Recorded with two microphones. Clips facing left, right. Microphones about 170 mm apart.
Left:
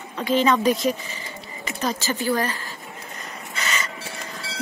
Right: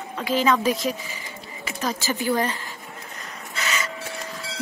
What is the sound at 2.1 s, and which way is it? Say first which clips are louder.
Speech: right 1 dB; 20° right (ahead or behind).